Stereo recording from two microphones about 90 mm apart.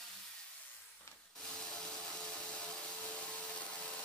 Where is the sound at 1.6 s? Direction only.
10° left (ahead or behind).